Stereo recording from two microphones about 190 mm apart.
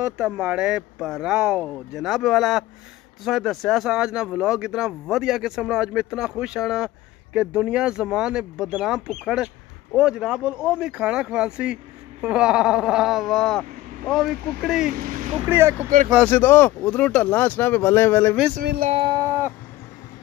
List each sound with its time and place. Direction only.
0.0 s speech: 5° right (ahead or behind)
14.9 s speech: 45° right (ahead or behind)
15.4 s speech: 10° right (ahead or behind)
16.2 s speech: 10° left (ahead or behind)
18.6 s speech: 55° right (ahead or behind)
18.9 s speech: 25° right (ahead or behind)